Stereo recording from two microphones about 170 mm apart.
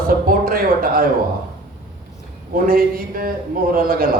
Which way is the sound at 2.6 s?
55° right (ahead or behind).